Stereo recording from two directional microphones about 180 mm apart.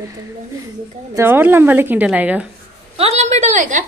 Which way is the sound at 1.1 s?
10° right (ahead or behind).